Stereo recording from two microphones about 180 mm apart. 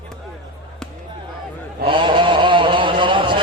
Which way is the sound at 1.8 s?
25° right (ahead or behind).